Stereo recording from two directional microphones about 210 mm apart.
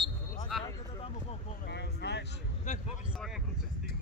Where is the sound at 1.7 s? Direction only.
55° left (ahead or behind).